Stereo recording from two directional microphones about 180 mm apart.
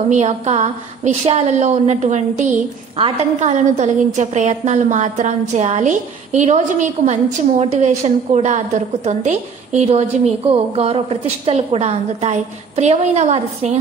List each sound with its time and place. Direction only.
0.1 s a woman's voice: 40° right (ahead or behind)